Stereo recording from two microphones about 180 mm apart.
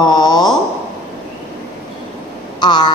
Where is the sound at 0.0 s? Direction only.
25° left (ahead or behind).